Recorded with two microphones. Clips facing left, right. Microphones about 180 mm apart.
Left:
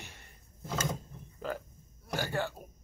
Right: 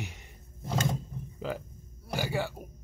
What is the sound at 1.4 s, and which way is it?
A man's voice, 10° right (ahead or behind).